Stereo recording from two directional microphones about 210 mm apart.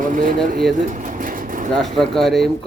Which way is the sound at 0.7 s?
40° right (ahead or behind).